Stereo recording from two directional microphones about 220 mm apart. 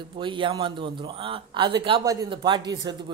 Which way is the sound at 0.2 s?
20° right (ahead or behind).